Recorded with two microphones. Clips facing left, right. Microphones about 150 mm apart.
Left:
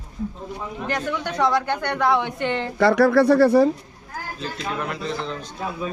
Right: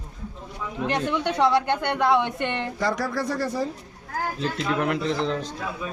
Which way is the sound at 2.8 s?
65° left (ahead or behind).